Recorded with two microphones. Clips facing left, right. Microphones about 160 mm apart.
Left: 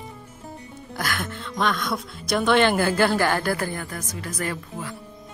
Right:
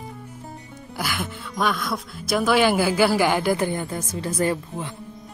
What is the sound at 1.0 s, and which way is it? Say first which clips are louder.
Speech: even; 10° right (ahead or behind).